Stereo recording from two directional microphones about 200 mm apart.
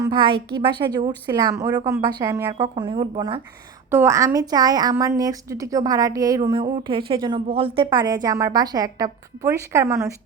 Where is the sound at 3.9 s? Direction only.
10° right (ahead or behind).